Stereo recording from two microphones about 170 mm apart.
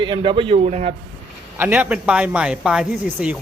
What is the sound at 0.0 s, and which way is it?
Speech, 30° right (ahead or behind).